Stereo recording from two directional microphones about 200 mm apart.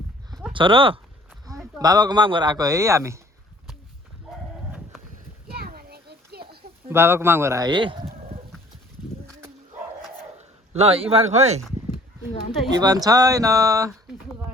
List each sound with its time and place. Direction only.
0.5 s speech: 25° right (ahead or behind)
5.5 s children playing: 50° right (ahead or behind)
6.8 s speech: 10° right (ahead or behind); by 8.4 s 25° right (ahead or behind)
10.8 s speech: 30° right (ahead or behind)
12.7 s speech: 20° right (ahead or behind)